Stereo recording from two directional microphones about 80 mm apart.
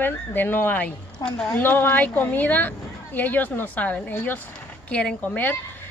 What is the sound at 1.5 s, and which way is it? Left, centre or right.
Speech, left.